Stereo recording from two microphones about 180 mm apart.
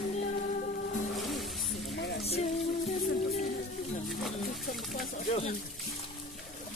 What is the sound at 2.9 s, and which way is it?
Music, 50° left (ahead or behind).